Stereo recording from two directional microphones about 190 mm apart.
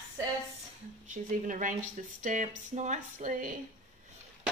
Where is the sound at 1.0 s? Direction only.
40° right (ahead or behind).